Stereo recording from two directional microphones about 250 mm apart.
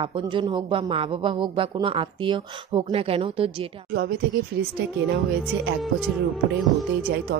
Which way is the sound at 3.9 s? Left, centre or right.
Right.